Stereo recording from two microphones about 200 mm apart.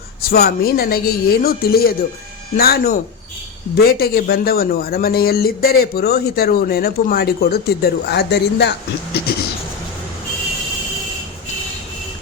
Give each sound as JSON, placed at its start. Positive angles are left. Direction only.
{"t": 0.2, "sound": "speech", "side_deg": 50}